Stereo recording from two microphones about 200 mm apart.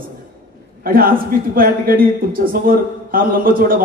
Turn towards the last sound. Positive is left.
turn(degrees=-45)  # may be behind; listen again after turning